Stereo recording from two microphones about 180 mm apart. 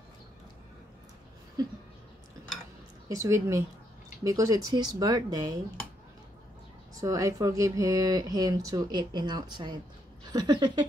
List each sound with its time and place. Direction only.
3.1 s speech: 15° right (ahead or behind)
7.0 s speech: 20° right (ahead or behind)